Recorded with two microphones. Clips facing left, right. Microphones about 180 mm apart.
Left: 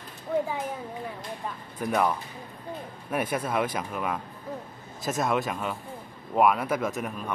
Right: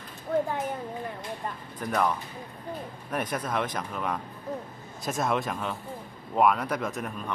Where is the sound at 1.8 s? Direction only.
5° left (ahead or behind).